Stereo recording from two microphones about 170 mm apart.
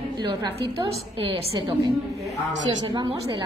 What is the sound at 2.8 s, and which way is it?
Speech, 25° right (ahead or behind).